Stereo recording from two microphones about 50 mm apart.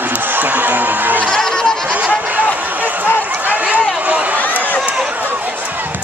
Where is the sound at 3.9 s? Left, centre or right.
Right.